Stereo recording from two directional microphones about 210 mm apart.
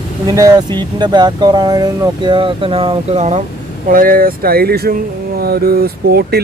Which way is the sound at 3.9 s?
40° right (ahead or behind).